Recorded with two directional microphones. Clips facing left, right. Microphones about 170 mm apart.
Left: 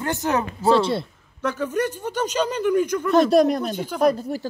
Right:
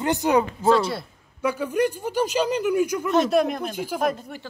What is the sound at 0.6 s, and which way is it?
Speech, 30° left (ahead or behind).